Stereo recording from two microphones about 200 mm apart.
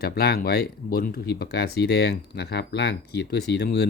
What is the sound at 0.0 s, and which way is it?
Speech, 50° left (ahead or behind).